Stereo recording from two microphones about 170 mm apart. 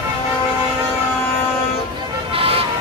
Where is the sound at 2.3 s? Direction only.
35° right (ahead or behind).